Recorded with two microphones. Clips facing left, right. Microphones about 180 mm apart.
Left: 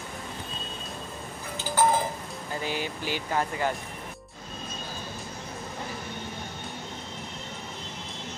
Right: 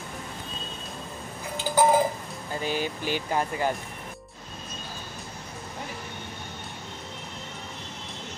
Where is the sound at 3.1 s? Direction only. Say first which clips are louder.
Even; 20° right (ahead or behind).